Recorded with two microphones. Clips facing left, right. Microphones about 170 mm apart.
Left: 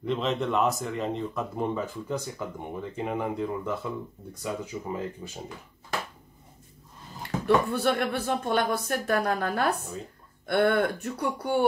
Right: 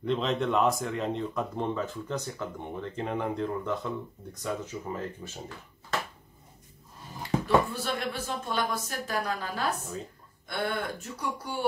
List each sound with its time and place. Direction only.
0.0 s speech: centre (ahead or behind)
7.4 s speech: 60° left (ahead or behind)